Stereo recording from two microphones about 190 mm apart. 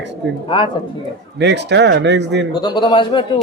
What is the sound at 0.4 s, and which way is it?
Speech, 25° left (ahead or behind).